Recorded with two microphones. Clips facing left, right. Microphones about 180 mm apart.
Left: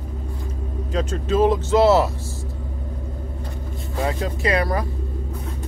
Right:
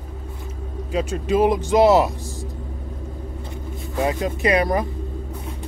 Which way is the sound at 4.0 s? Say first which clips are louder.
Right 2 dB; 15° right (ahead or behind).